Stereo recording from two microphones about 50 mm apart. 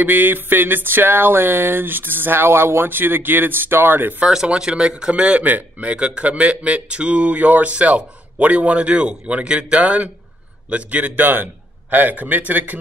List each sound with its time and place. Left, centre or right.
0.0 s a sound: right
4.5 s speech: centre
5.4 s speech: right